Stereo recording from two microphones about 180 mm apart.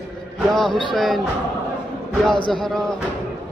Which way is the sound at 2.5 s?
Centre (ahead or behind).